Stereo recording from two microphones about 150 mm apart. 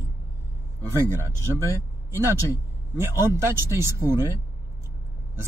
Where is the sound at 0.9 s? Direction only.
15° right (ahead or behind).